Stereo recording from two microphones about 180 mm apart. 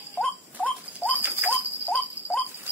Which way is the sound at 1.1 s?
10° right (ahead or behind).